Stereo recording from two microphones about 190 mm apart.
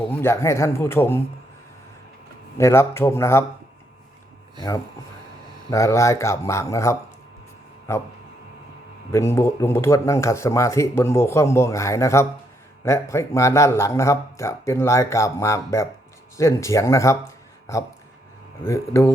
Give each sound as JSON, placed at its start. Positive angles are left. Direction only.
{"t": 0.1, "sound": "speech", "side_deg": 10}
{"t": 2.6, "sound": "speech", "side_deg": 15}
{"t": 5.7, "sound": "speech", "side_deg": 15}
{"t": 9.1, "sound": "speech", "side_deg": 15}